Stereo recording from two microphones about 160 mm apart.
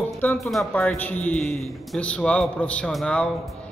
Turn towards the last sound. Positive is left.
turn(degrees=5)  # may be behind; listen again after turning